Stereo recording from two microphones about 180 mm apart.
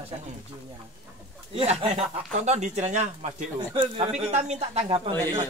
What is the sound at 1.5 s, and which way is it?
Speech, 30° right (ahead or behind).